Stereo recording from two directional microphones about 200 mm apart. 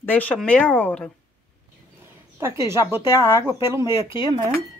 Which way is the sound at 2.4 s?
15° right (ahead or behind).